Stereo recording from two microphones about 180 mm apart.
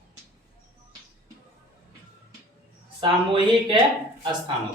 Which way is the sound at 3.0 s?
25° right (ahead or behind).